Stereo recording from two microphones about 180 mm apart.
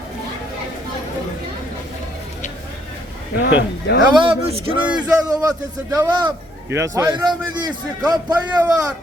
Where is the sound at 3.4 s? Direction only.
60° left (ahead or behind).